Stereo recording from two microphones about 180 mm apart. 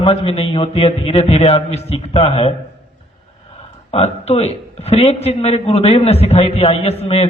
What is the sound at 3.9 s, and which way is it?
Speech, 35° left (ahead or behind).